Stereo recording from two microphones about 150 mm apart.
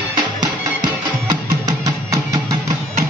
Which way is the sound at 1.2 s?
25° right (ahead or behind).